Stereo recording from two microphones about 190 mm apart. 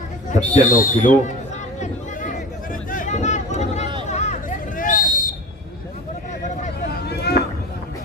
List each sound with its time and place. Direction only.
0.3 s speech: 45° left (ahead or behind)
1.8 s a sound: 40° left (ahead or behind)
4.1 s hubbub: 40° left (ahead or behind)
6.9 s vehicle: 60° left (ahead or behind)